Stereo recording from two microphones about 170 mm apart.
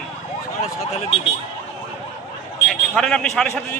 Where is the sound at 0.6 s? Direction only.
40° left (ahead or behind).